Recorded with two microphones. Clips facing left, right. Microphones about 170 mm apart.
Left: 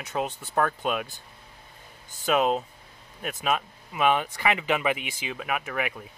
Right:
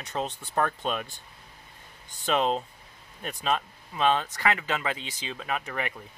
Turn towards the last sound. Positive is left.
turn(degrees=5)  # may be behind; listen again after turning